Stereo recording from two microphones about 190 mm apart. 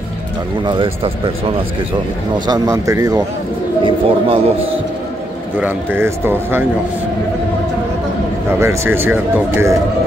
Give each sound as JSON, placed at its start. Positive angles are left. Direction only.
{"t": 0.7, "sound": "speech", "side_deg": -30}
{"t": 2.3, "sound": "speech", "side_deg": -20}
{"t": 5.6, "sound": "speech", "side_deg": -10}
{"t": 8.5, "sound": "speech", "side_deg": -15}